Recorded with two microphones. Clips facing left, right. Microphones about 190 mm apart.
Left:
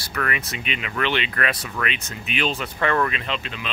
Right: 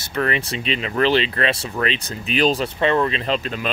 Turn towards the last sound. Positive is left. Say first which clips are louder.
# right 7 dB
turn(degrees=-40)  # may be behind; listen again after turning